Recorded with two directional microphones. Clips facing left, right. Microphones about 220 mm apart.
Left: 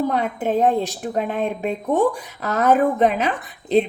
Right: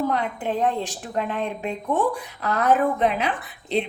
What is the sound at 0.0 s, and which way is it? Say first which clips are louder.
Speech: left 3 dB; 40° left (ahead or behind).